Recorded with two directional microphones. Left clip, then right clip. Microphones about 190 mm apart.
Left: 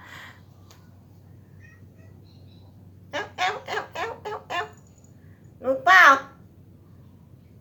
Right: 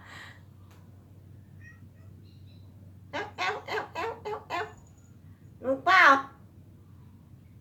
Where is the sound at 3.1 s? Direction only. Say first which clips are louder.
Left 5 dB; 20° left (ahead or behind).